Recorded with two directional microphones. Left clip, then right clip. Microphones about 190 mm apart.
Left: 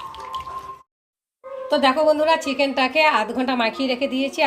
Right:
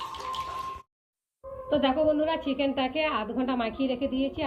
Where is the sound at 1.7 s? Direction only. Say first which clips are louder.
Left 7 dB; 55° left (ahead or behind).